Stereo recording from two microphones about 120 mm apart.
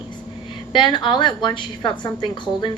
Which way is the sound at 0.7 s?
40° left (ahead or behind).